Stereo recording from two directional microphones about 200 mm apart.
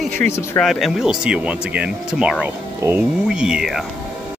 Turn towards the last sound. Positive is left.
turn(degrees=0)  # may be behind; listen again after turning